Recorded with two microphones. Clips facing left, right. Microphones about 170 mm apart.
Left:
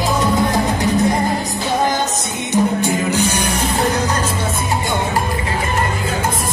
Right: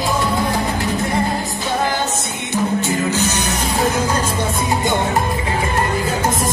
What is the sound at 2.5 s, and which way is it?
Music, 15° left (ahead or behind).